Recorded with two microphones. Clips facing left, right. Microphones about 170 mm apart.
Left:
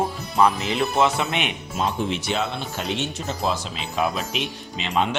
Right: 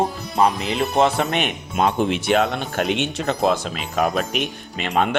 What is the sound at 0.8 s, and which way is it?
Speech, 45° right (ahead or behind).